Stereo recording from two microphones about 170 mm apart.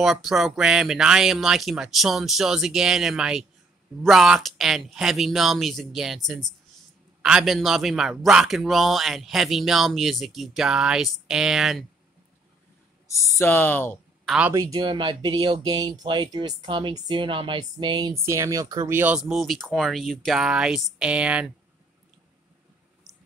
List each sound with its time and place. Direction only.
0.0 s a man's voice: centre (ahead or behind)
13.1 s speech: 15° left (ahead or behind)
14.2 s speech: 5° right (ahead or behind)
14.5 s speech: 20° right (ahead or behind)
18.2 s a man's voice: 15° right (ahead or behind)
23.1 s a sound: 5° right (ahead or behind)